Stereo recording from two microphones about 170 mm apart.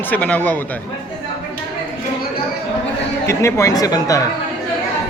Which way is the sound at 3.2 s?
15° left (ahead or behind).